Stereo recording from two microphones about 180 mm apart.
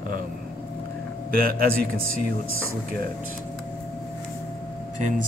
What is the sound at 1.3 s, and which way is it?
Speech, 55° right (ahead or behind).